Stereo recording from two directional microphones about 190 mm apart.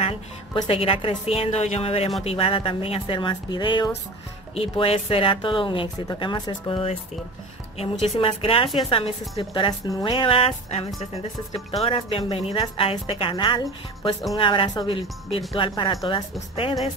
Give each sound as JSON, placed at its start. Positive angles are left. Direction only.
{"t": 0.0, "sound": "a woman's voice", "side_deg": 30}
{"t": 8.2, "sound": "speech", "side_deg": 30}